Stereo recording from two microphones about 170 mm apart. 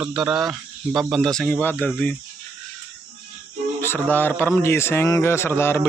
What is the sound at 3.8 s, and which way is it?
A man's voice, 10° left (ahead or behind).